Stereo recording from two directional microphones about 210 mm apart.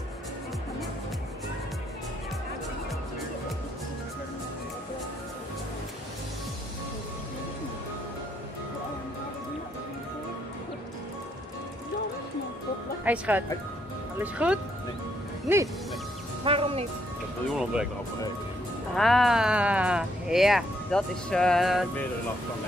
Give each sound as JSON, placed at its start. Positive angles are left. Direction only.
{"t": 13.0, "sound": "speech", "side_deg": -5}
{"t": 16.4, "sound": "music", "side_deg": -25}
{"t": 17.5, "sound": "speech", "side_deg": 0}
{"t": 18.9, "sound": "speech", "side_deg": 0}